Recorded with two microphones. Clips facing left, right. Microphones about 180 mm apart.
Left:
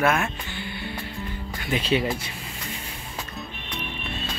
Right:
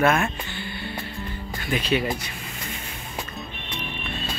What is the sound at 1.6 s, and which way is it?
Speech, 25° left (ahead or behind).